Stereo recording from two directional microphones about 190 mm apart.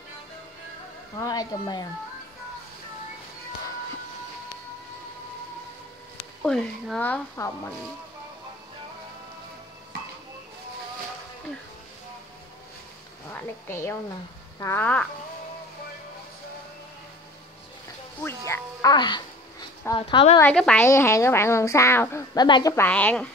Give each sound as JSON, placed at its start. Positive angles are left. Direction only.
{"t": 1.1, "sound": "speech", "side_deg": 20}
{"t": 6.4, "sound": "a woman's voice", "side_deg": 5}
{"t": 13.3, "sound": "a woman's voice", "side_deg": 10}
{"t": 18.2, "sound": "speech", "side_deg": 15}
{"t": 20.3, "sound": "a woman's voice", "side_deg": 5}